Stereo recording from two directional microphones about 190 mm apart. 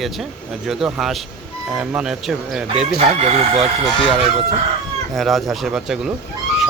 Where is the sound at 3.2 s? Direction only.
35° right (ahead or behind).